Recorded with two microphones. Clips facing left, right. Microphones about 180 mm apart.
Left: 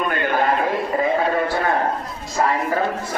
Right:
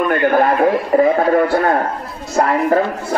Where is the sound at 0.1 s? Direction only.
55° right (ahead or behind).